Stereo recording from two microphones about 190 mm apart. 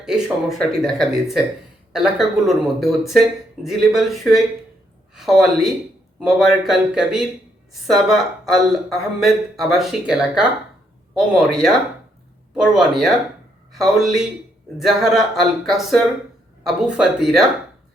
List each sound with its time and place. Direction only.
0.0 s speech: centre (ahead or behind)